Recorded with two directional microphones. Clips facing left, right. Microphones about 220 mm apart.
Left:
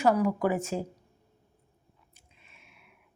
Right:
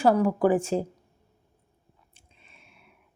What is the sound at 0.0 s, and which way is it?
Speech, 30° right (ahead or behind).